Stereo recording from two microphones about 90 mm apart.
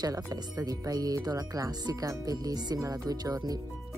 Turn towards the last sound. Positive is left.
turn(degrees=-45)  # may be behind; listen again after turning